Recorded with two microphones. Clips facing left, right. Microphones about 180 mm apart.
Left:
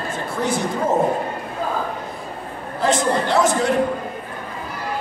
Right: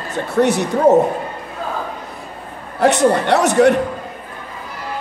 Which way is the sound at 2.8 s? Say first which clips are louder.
Right 5 dB; 70° right (ahead or behind).